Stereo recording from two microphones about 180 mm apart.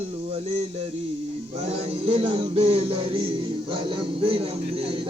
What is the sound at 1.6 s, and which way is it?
Mantra, 35° right (ahead or behind).